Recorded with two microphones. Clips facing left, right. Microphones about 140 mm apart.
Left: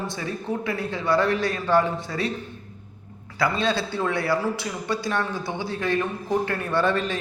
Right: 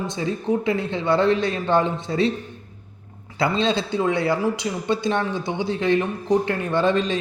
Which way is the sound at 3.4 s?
25° right (ahead or behind).